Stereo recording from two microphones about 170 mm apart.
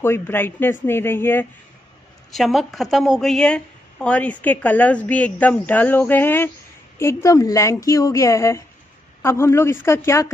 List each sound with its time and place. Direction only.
0.0 s a woman's voice: 15° left (ahead or behind)
2.3 s a woman's voice: centre (ahead or behind); by 10.3 s 15° left (ahead or behind)